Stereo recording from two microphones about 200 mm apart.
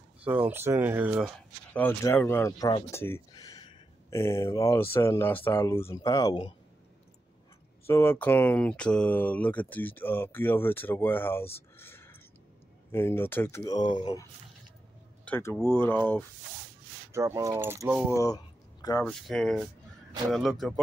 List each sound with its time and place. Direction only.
0.2 s speech: 10° right (ahead or behind)
1.7 s speech: 10° left (ahead or behind)
7.8 s speech: 10° left (ahead or behind)
11.8 s a sound: 10° left (ahead or behind)
12.9 s speech: 10° left (ahead or behind)
15.2 s speech: 10° left (ahead or behind)
17.1 s speech: 15° right (ahead or behind)
18.1 s speech: 15° left (ahead or behind)
19.0 s speech: 5° left (ahead or behind)